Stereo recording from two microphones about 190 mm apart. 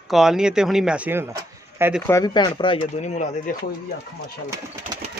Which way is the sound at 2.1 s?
20° left (ahead or behind).